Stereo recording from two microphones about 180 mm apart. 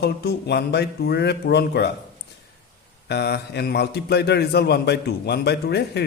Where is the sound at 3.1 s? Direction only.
65° left (ahead or behind).